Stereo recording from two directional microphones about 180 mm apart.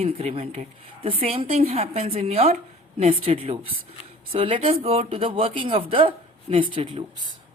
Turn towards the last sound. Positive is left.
turn(degrees=-30)  # may be behind; listen again after turning